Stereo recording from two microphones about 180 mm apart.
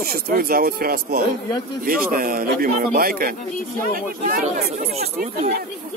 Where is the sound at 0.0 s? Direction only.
55° right (ahead or behind).